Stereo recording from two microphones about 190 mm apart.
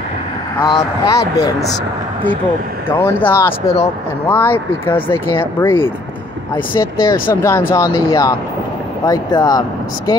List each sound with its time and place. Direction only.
0.6 s speech: 20° left (ahead or behind)
3.0 s speech: 10° left (ahead or behind)
4.8 s speech: 25° left (ahead or behind)
5.6 s speech: 15° left (ahead or behind)